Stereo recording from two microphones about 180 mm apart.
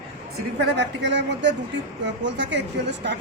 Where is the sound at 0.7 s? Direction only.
70° right (ahead or behind).